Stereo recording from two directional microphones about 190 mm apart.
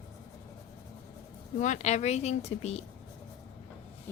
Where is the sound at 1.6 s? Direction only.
40° left (ahead or behind).